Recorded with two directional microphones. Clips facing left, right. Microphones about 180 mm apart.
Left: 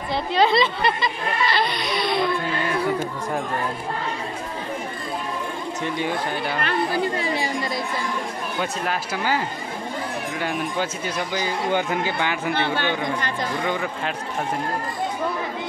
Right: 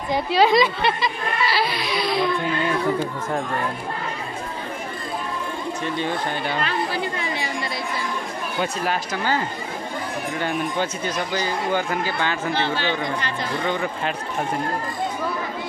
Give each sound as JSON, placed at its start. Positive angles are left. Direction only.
{"t": 0.1, "sound": "a woman's voice", "side_deg": -10}
{"t": 5.9, "sound": "speech", "side_deg": 5}
{"t": 8.5, "sound": "speech", "side_deg": 0}
{"t": 10.4, "sound": "speech", "side_deg": 5}
{"t": 12.5, "sound": "speech", "side_deg": 55}
{"t": 13.7, "sound": "speech", "side_deg": 5}